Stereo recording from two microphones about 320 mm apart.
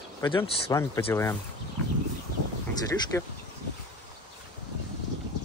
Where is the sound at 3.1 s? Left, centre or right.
Centre.